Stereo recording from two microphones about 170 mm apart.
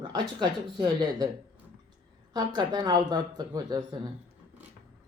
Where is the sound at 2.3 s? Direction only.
25° right (ahead or behind).